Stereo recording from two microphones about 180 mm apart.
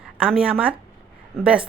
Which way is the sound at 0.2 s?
5° right (ahead or behind).